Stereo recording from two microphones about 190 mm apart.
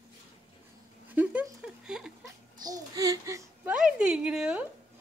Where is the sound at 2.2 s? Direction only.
20° right (ahead or behind).